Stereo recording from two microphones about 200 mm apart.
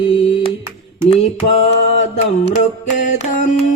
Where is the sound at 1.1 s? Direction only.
30° left (ahead or behind).